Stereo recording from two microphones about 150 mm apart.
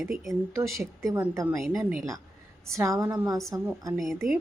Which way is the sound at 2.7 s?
20° right (ahead or behind).